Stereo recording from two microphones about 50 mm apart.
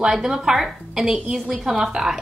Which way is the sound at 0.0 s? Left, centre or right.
Centre.